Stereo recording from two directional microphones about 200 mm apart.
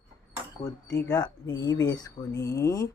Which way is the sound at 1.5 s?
20° left (ahead or behind).